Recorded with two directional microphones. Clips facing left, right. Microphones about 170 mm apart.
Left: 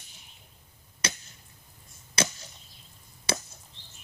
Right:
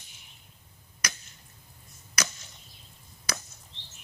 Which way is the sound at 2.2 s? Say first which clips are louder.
Left 5 dB; 30° left (ahead or behind).